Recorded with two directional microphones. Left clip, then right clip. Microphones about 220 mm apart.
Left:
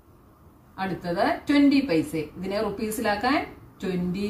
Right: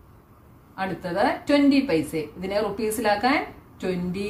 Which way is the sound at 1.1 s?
25° right (ahead or behind).